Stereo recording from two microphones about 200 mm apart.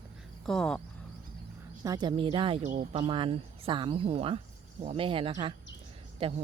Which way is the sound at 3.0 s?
25° right (ahead or behind).